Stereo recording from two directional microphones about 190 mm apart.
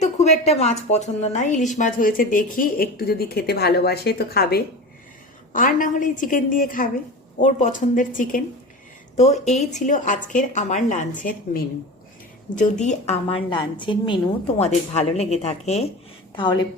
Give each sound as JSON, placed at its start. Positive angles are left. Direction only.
{"t": 0.0, "sound": "a woman's voice", "side_deg": 35}
{"t": 12.8, "sound": "a woman's voice", "side_deg": 35}
{"t": 16.3, "sound": "a woman's voice", "side_deg": 25}